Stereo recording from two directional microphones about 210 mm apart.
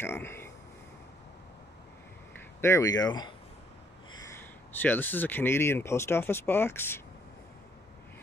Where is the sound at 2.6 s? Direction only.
15° left (ahead or behind).